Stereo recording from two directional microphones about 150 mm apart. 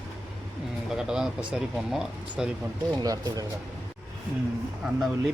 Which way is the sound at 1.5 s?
5° right (ahead or behind).